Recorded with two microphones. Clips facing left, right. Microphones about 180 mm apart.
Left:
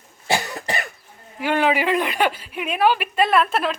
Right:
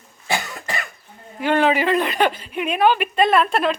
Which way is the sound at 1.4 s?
10° left (ahead or behind).